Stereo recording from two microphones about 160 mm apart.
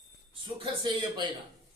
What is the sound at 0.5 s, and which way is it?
Speech, 30° right (ahead or behind).